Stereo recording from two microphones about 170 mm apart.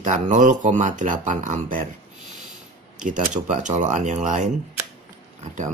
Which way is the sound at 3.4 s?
45° right (ahead or behind).